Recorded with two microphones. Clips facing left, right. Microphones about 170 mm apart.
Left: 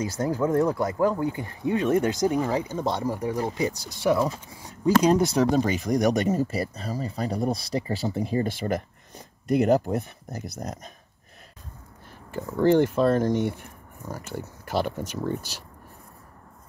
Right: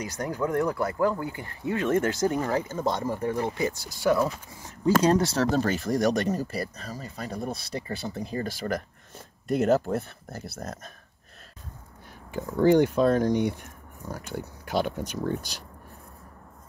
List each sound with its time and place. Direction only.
0.2 s speech: 25° left (ahead or behind)
2.8 s speech: centre (ahead or behind)
3.2 s speech: 15° left (ahead or behind)
12.3 s speech: centre (ahead or behind)